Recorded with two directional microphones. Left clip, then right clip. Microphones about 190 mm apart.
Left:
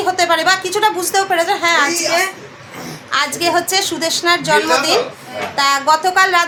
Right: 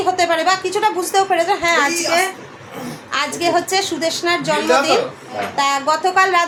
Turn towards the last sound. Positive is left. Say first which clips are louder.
# left 2 dB
turn(degrees=5)  # may be behind; listen again after turning